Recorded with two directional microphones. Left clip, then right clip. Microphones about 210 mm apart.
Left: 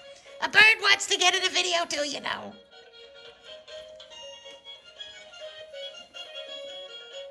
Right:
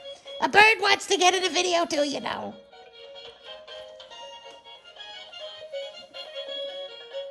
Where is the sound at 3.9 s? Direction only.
30° right (ahead or behind).